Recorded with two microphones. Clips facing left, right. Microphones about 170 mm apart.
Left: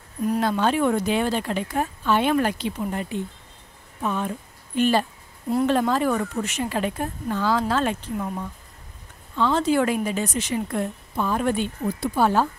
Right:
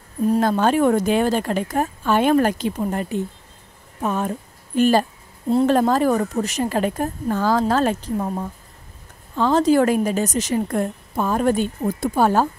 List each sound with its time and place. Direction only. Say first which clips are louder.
0.4 s a woman's voice: right 3 dB; 45° right (ahead or behind)